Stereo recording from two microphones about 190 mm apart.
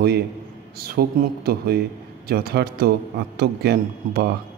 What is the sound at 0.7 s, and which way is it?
A man's voice, 55° right (ahead or behind).